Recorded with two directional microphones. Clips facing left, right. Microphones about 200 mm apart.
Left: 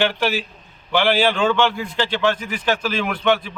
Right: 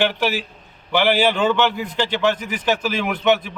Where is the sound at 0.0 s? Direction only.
15° right (ahead or behind).